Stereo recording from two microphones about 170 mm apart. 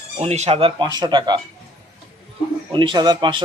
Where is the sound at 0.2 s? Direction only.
40° right (ahead or behind).